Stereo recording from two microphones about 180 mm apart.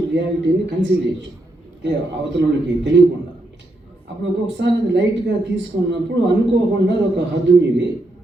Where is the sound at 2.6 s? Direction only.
75° right (ahead or behind).